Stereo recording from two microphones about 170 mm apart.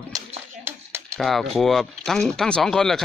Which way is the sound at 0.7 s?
15° right (ahead or behind).